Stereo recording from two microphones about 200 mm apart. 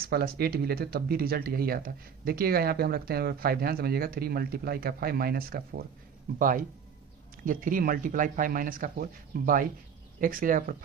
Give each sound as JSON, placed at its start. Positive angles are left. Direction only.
{"t": 0.0, "sound": "speech", "side_deg": -50}